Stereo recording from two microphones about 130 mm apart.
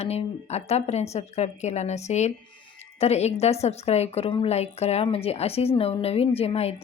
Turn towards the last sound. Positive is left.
turn(degrees=50)  # may be behind; listen again after turning